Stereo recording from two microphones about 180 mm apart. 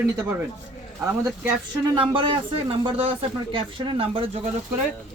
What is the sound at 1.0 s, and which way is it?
Speech, 15° right (ahead or behind).